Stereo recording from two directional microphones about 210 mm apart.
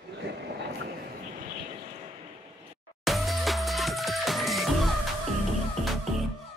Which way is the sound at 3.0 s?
Centre (ahead or behind).